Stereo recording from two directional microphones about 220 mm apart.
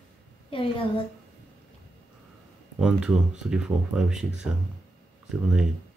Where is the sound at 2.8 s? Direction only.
5° right (ahead or behind).